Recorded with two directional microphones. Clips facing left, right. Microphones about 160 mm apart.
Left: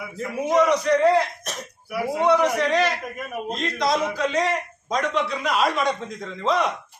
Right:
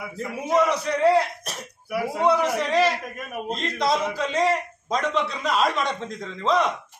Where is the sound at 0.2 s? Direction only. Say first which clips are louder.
Left 2 dB; 5° right (ahead or behind).